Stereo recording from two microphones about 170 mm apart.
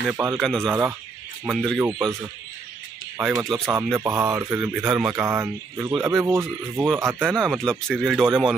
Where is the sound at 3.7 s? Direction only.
15° right (ahead or behind).